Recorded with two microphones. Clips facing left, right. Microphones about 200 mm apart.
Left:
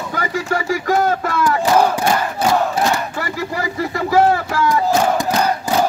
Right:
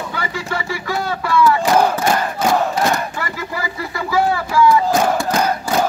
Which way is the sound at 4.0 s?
45° left (ahead or behind).